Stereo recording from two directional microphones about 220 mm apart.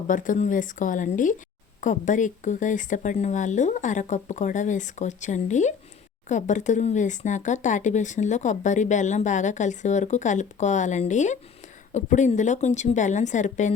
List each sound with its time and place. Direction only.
0.1 s speech: 35° left (ahead or behind)